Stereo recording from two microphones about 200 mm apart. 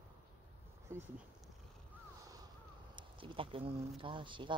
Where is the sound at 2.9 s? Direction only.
25° right (ahead or behind).